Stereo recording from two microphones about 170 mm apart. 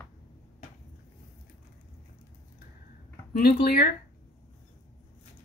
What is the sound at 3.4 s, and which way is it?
Speech, 65° left (ahead or behind).